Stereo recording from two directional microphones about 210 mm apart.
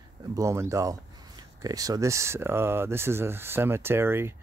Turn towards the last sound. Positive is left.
turn(degrees=-10)  # may be behind; listen again after turning